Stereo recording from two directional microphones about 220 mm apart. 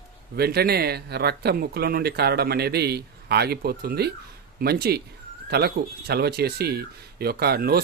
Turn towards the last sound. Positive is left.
turn(degrees=-45)  # may be behind; listen again after turning